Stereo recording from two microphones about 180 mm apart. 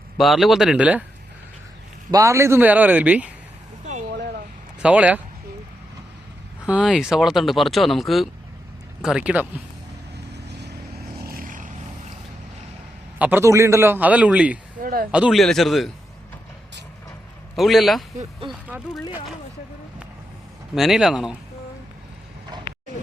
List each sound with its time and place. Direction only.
0.2 s speech: centre (ahead or behind)
2.0 s a man's voice: 20° right (ahead or behind)
4.8 s a man's voice: 5° right (ahead or behind)
6.7 s speech: 5° right (ahead or behind)
11.3 s vehicle: 50° right (ahead or behind)
13.1 s a man's voice: 10° right (ahead or behind)
14.8 s speech: 55° right (ahead or behind)
15.1 s speech: 5° right (ahead or behind)
17.5 s speech: centre (ahead or behind)
18.2 s speech: 30° right (ahead or behind)
20.7 s speech: centre (ahead or behind)